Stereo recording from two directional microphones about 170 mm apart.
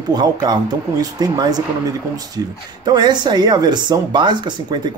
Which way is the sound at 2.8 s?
25° right (ahead or behind).